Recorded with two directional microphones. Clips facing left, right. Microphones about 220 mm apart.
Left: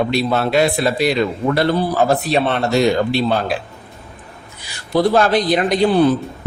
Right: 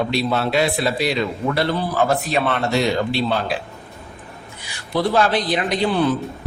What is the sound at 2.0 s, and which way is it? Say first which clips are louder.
Speech: left 2 dB; 30° left (ahead or behind).